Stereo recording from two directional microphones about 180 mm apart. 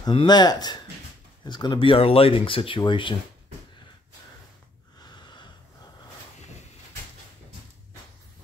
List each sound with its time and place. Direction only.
0.0 s speech: 25° left (ahead or behind)
5.0 s wheeze: 25° left (ahead or behind)